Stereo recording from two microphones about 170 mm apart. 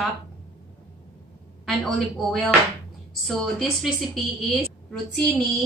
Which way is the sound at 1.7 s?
Centre (ahead or behind).